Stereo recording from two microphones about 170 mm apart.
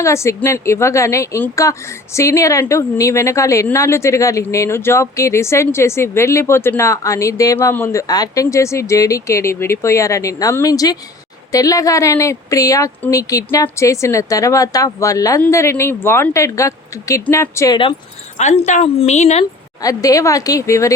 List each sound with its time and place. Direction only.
0.0 s speech: 15° left (ahead or behind)
18.3 s a woman's voice: 45° left (ahead or behind)
19.8 s speech: 20° left (ahead or behind)